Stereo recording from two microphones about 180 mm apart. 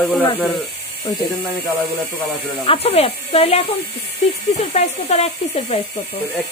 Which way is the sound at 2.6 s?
30° left (ahead or behind).